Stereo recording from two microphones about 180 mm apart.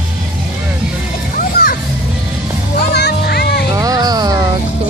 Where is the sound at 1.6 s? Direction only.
55° left (ahead or behind).